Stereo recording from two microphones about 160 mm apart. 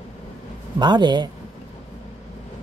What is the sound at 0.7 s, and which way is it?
Speech, 30° right (ahead or behind).